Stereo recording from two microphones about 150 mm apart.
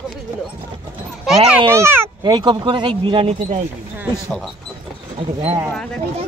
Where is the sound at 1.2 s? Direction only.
5° right (ahead or behind).